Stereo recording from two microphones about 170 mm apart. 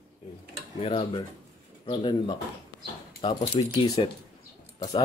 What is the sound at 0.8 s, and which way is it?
Speech, 35° left (ahead or behind).